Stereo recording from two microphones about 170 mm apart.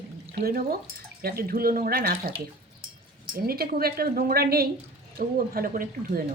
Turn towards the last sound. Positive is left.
turn(degrees=-55)  # may be behind; listen again after turning